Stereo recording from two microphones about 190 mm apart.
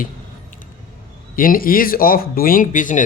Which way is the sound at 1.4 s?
50° left (ahead or behind).